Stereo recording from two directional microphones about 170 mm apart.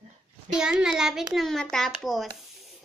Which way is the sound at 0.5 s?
5° right (ahead or behind).